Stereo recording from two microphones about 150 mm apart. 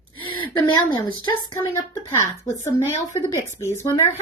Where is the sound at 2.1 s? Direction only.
20° left (ahead or behind).